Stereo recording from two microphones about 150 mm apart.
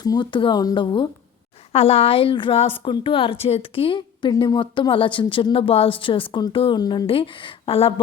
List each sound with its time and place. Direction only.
0.0 s a woman's voice: 30° left (ahead or behind)
1.7 s a woman's voice: 40° left (ahead or behind)